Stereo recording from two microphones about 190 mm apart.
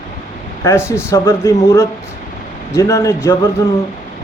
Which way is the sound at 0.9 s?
15° left (ahead or behind).